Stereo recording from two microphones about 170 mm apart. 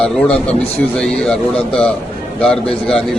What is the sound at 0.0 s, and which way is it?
A man's voice, 5° left (ahead or behind).